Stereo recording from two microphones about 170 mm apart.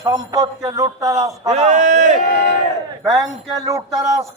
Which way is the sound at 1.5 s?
40° right (ahead or behind).